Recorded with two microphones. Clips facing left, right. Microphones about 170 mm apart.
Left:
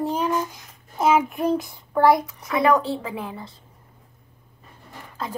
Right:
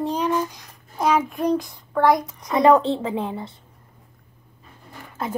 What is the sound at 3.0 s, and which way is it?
Speech, 25° right (ahead or behind).